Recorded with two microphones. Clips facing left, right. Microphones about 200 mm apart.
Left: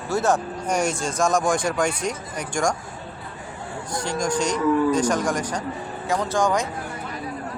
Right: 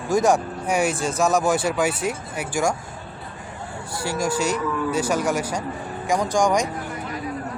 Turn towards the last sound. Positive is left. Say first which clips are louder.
# right 2 dB
turn(degrees=-15)  # may be behind; listen again after turning